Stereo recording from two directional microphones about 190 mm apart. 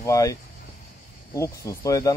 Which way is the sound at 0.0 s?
15° left (ahead or behind).